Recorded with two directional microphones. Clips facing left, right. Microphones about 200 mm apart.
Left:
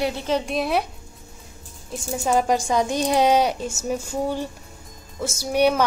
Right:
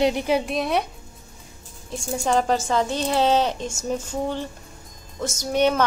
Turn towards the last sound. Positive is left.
turn(degrees=10)  # may be behind; listen again after turning